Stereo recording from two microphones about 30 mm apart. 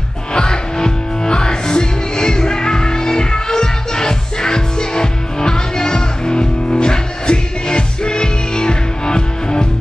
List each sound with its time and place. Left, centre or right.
0.3 s music: left